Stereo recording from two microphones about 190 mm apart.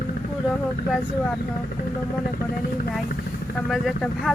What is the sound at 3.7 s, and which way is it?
Speech, centre (ahead or behind).